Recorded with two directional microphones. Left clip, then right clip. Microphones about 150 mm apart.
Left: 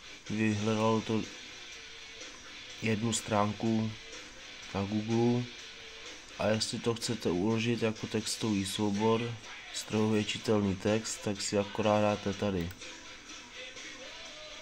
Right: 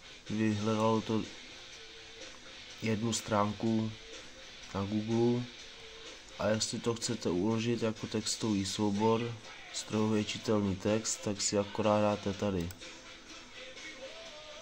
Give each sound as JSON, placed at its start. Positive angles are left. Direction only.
{"t": 0.4, "sound": "speech", "side_deg": 10}
{"t": 2.8, "sound": "speech", "side_deg": 10}